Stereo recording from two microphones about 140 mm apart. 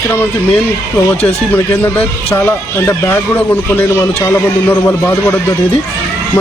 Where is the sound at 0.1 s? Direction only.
15° left (ahead or behind).